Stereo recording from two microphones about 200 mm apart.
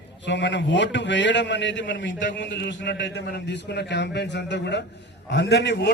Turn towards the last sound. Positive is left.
turn(degrees=60)  # may be behind; listen again after turning